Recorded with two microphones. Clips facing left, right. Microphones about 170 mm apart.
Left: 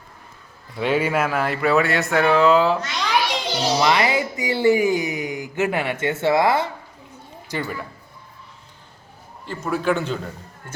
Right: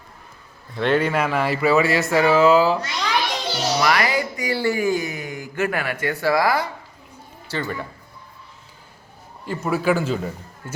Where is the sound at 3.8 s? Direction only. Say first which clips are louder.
Left 1 dB; 20° left (ahead or behind).